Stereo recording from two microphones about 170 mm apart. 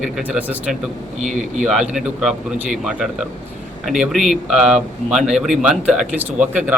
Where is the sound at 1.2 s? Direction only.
45° right (ahead or behind).